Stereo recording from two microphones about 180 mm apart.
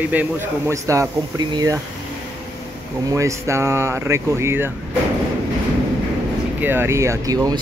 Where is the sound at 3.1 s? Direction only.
15° right (ahead or behind).